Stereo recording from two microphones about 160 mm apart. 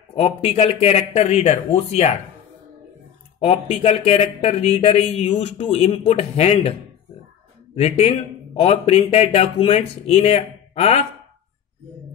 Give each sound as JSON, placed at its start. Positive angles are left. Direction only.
{"t": 0.1, "sound": "a man's voice", "side_deg": 40}
{"t": 3.3, "sound": "a man's voice", "side_deg": 40}
{"t": 7.7, "sound": "a man's voice", "side_deg": 35}